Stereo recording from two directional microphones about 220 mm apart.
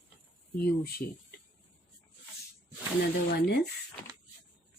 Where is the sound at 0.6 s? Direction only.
45° left (ahead or behind).